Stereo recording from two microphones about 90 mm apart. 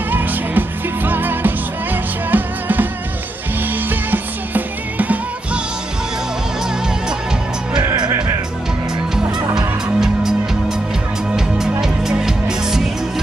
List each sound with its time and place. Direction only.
0.1 s music: 20° right (ahead or behind)
3.9 s music: 20° right (ahead or behind)
9.6 s fowl: 5° right (ahead or behind)
11.3 s music: 5° right (ahead or behind)